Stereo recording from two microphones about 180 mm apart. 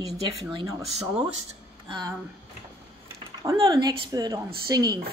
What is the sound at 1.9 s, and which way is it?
Speech, 20° right (ahead or behind).